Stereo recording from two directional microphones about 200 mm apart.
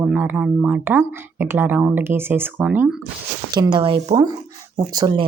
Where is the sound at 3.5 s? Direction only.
25° right (ahead or behind).